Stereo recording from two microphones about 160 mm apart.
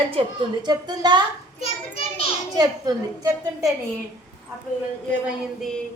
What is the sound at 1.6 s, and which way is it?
Children playing, 35° left (ahead or behind).